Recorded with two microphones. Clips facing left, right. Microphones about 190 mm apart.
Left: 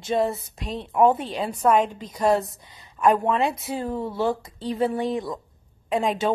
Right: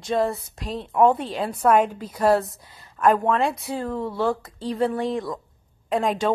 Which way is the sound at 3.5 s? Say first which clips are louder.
Even; 25° left (ahead or behind).